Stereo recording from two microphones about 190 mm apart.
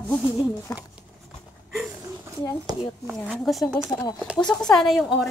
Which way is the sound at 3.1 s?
Centre (ahead or behind).